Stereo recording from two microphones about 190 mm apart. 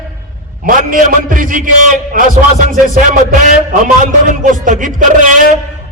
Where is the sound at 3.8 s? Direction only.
40° right (ahead or behind).